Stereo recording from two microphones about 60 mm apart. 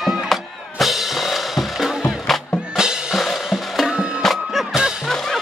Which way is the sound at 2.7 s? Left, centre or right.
Centre.